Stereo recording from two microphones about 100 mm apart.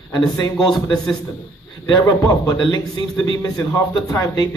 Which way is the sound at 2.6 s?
50° left (ahead or behind).